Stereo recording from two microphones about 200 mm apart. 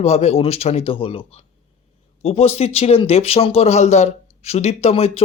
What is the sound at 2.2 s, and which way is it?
A man's voice, 30° left (ahead or behind).